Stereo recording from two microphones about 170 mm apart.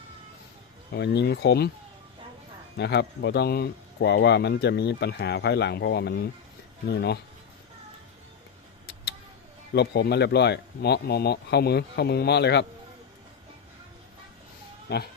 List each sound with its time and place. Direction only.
0.9 s speech: 85° left
2.7 s speech: 80° left
9.7 s speech: 75° left (ahead or behind)